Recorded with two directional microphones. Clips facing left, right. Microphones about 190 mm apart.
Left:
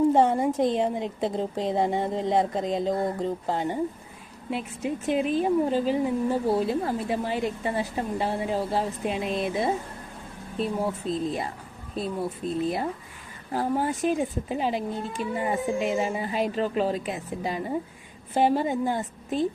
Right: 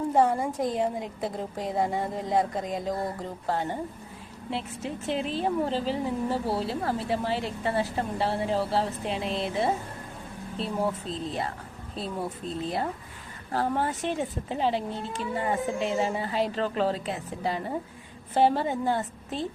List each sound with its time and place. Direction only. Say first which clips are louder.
0.1 s a woman's voice: left 3 dB; 25° left (ahead or behind)